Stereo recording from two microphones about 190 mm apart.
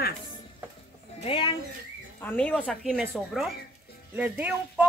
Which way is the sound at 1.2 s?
25° left (ahead or behind).